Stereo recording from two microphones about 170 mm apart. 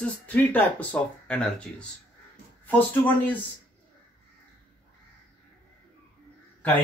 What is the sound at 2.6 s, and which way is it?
Speech, 10° left (ahead or behind).